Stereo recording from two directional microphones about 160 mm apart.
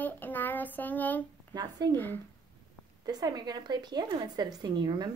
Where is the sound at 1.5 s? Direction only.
25° right (ahead or behind).